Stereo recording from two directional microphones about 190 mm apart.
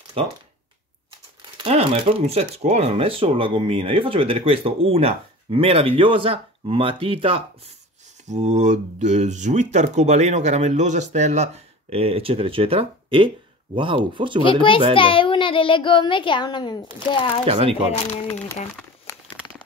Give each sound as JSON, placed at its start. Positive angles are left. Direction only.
{"t": 1.6, "sound": "speech", "side_deg": -30}
{"t": 8.3, "sound": "speech", "side_deg": -40}
{"t": 14.4, "sound": "a child's voice", "side_deg": 25}
{"t": 17.5, "sound": "speech", "side_deg": -30}